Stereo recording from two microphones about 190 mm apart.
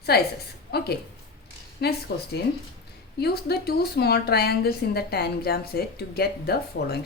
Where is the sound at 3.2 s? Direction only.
55° left (ahead or behind).